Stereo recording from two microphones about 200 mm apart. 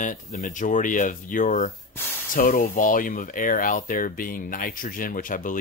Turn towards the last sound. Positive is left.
turn(degrees=40)  # may be behind; listen again after turning